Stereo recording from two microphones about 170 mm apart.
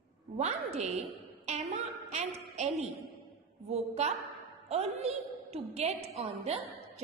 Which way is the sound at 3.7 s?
40° right (ahead or behind).